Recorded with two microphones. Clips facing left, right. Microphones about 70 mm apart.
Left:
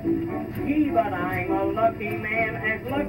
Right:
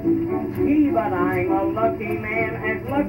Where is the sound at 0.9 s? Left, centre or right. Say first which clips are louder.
Right 3 dB; centre.